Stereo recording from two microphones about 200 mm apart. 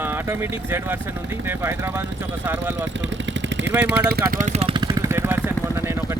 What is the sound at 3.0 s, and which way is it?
Vehicle, 65° right (ahead or behind).